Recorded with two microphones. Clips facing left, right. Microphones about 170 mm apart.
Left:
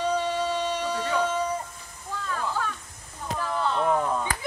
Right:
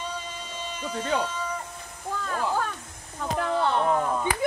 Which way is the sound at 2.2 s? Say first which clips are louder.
Right 2 dB; 45° right (ahead or behind).